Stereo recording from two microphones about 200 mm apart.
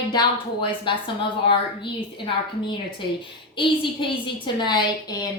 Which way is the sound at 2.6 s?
25° left (ahead or behind).